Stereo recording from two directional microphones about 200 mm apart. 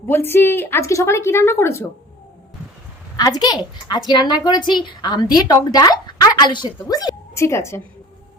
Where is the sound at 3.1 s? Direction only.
20° left (ahead or behind).